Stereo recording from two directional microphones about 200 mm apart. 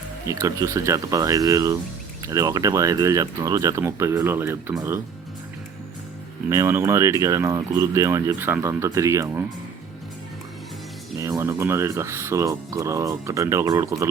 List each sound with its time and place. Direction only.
0.3 s speech: 15° right (ahead or behind)
6.5 s speech: 10° right (ahead or behind)
11.2 s speech: 15° right (ahead or behind)